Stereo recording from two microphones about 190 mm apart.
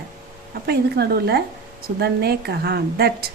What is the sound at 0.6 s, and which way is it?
A woman's voice, 60° right (ahead or behind).